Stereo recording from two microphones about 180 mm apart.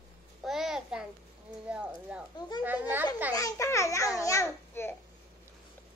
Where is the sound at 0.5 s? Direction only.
Centre (ahead or behind).